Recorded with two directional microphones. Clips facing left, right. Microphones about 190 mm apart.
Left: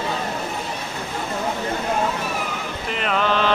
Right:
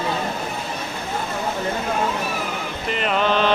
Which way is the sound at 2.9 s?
Centre (ahead or behind).